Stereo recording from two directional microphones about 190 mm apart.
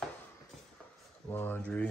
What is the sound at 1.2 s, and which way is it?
Speech, 10° left (ahead or behind).